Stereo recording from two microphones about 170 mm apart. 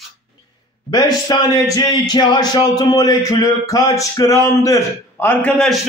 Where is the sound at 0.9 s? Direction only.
25° left (ahead or behind); by 5.7 s 5° left (ahead or behind).